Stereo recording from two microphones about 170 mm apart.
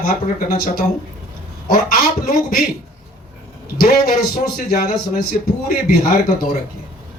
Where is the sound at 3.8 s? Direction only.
55° left (ahead or behind).